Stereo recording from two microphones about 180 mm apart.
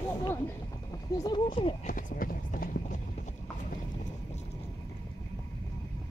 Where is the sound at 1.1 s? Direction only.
25° left (ahead or behind).